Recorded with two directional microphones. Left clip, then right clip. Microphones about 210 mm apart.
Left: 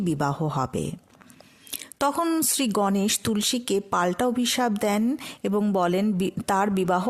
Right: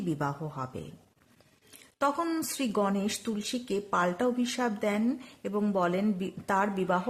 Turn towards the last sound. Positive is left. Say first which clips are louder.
# left 5 dB
turn(degrees=50)  # may be behind; listen again after turning